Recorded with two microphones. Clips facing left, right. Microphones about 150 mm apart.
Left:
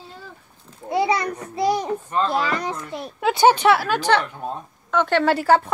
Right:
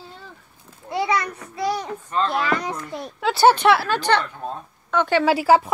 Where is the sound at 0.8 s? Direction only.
25° left (ahead or behind).